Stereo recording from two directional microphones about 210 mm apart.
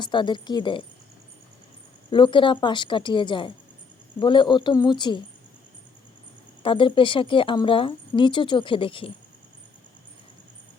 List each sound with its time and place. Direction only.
0.0 s a woman's voice: 20° left (ahead or behind)
2.0 s a woman's voice: 25° left (ahead or behind)
6.6 s a woman's voice: 25° left (ahead or behind)